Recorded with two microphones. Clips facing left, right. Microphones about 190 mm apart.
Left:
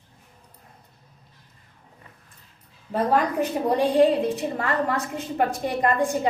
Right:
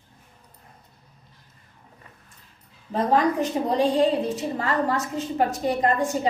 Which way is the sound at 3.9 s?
60° left (ahead or behind).